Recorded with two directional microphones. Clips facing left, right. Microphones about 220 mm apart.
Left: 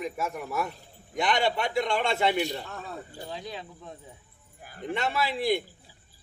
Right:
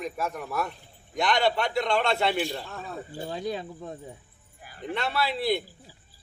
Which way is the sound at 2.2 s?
20° left (ahead or behind).